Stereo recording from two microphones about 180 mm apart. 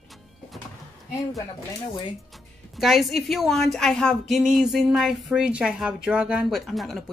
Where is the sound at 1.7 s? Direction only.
25° left (ahead or behind).